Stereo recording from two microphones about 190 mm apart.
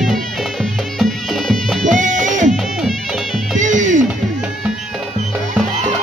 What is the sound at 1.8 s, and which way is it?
Music, 40° right (ahead or behind).